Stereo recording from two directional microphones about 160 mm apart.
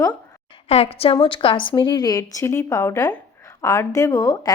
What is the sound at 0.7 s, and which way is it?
A woman's voice, 40° left (ahead or behind).